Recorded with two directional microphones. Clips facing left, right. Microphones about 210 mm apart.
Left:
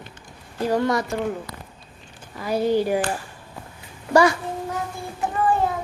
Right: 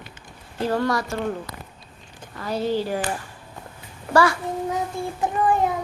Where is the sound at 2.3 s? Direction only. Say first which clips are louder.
Left 3 dB; 10° left (ahead or behind).